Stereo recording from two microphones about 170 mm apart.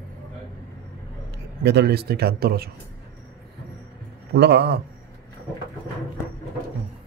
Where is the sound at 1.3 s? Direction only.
80° right; by 2.7 s 65° right (ahead or behind).